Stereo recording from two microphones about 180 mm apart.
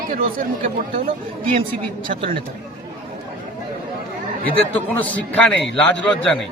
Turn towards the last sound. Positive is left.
turn(degrees=5)  # may be behind; listen again after turning